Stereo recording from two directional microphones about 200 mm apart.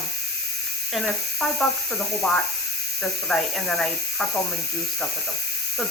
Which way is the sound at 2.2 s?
5° left (ahead or behind).